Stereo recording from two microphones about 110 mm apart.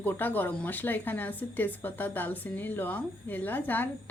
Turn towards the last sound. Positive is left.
turn(degrees=20)  # may be behind; listen again after turning